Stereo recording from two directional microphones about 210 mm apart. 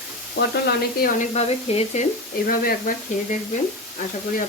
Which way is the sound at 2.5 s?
40° left (ahead or behind).